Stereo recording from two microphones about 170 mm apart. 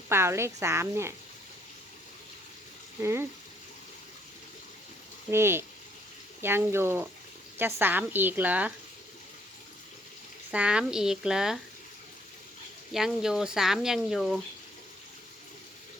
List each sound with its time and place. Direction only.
0.1 s a woman's voice: 15° right (ahead or behind)
3.0 s a woman's voice: 15° right (ahead or behind)
5.3 s a woman's voice: 15° right (ahead or behind)
10.5 s speech: 5° right (ahead or behind)
12.9 s speech: 5° right (ahead or behind)